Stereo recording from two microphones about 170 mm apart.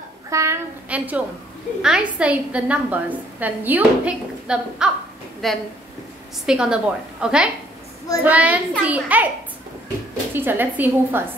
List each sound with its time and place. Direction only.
0.3 s a child's voice: 20° right (ahead or behind)
10.3 s a woman's voice: 10° right (ahead or behind)